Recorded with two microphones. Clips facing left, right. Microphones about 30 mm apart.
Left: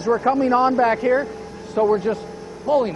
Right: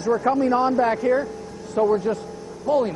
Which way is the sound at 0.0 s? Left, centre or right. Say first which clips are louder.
Left 2 dB; left.